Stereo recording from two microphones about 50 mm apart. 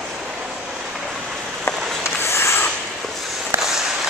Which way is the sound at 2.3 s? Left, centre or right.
Left.